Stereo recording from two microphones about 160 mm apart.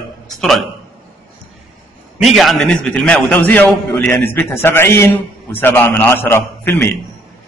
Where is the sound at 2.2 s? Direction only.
Centre (ahead or behind); by 6.9 s 15° left (ahead or behind).